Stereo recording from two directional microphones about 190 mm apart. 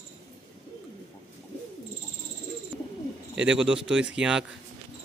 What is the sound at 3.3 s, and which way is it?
Speech, 5° right (ahead or behind).